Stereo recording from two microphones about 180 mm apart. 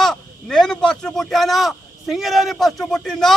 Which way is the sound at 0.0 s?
5° left (ahead or behind).